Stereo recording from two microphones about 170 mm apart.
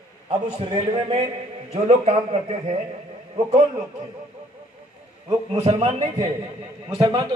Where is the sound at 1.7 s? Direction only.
40° right (ahead or behind).